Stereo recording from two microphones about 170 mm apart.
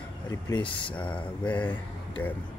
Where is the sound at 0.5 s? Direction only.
30° left (ahead or behind).